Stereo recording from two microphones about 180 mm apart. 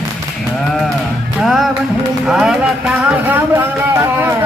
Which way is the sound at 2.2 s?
5° right (ahead or behind).